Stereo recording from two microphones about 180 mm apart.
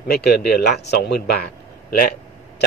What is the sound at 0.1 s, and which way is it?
Speech, 65° left (ahead or behind).